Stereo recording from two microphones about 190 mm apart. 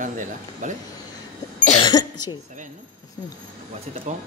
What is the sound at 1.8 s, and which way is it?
Cough, 20° left (ahead or behind).